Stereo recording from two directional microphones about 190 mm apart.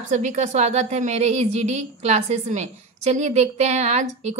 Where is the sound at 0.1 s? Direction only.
40° right (ahead or behind).